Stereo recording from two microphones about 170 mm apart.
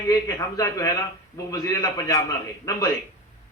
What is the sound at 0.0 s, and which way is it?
A man's voice, 20° left (ahead or behind).